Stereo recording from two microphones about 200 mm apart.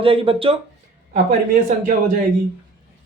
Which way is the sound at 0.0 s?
25° right (ahead or behind).